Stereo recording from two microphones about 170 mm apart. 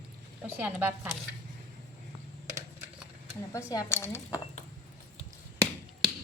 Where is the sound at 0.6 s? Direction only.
10° right (ahead or behind).